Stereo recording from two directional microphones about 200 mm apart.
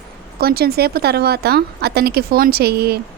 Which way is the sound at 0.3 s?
50° right (ahead or behind).